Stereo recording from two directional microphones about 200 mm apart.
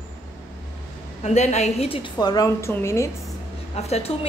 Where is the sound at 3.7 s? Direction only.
30° left (ahead or behind).